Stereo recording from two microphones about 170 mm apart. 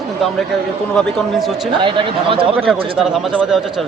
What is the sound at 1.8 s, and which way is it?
Speech, 30° right (ahead or behind).